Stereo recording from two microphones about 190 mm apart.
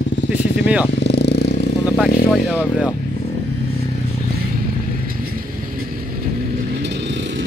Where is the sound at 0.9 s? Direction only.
60° left (ahead or behind).